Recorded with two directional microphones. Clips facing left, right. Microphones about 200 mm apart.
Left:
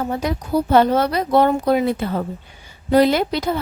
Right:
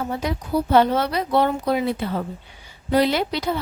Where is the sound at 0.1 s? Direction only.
45° left (ahead or behind).